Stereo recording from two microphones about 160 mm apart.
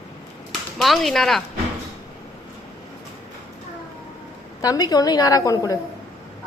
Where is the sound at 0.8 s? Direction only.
Centre (ahead or behind).